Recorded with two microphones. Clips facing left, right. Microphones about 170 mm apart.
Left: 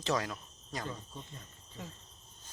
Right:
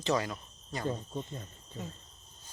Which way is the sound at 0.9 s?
35° right (ahead or behind).